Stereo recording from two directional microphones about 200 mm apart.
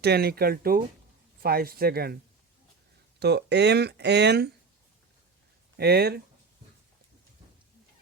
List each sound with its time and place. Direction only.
0.0 s speech: 55° right (ahead or behind)
3.2 s speech: 55° right (ahead or behind)
5.7 s speech: 55° right (ahead or behind)